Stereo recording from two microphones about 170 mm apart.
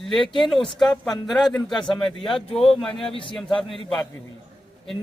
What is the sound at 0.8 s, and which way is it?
Speech, centre (ahead or behind).